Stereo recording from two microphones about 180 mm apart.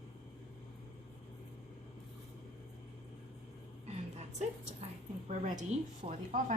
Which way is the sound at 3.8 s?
40° right (ahead or behind).